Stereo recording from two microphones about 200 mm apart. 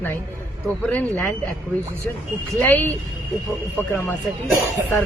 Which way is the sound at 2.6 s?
10° left (ahead or behind).